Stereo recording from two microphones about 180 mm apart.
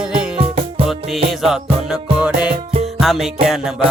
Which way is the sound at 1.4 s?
5° right (ahead or behind).